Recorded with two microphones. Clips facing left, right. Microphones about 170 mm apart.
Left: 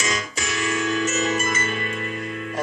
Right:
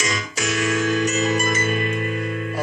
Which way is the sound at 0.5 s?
45° right (ahead or behind).